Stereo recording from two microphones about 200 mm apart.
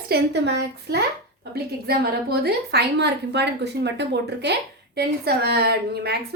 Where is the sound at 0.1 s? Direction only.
55° right (ahead or behind).